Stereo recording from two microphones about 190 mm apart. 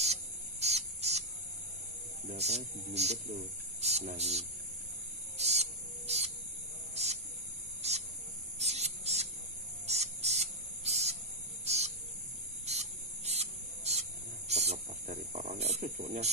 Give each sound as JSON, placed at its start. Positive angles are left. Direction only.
{"t": 0.0, "sound": "cricket", "side_deg": -35}
{"t": 2.2, "sound": "speech", "side_deg": -35}
{"t": 5.4, "sound": "music", "side_deg": -35}
{"t": 7.0, "sound": "mains hum", "side_deg": -35}
{"t": 7.8, "sound": "cricket", "side_deg": -35}
{"t": 8.5, "sound": "a sound", "side_deg": -35}
{"t": 9.8, "sound": "insect", "side_deg": -35}
{"t": 11.6, "sound": "cricket", "side_deg": -35}
{"t": 12.6, "sound": "spray", "side_deg": -35}
{"t": 14.5, "sound": "snake", "side_deg": -35}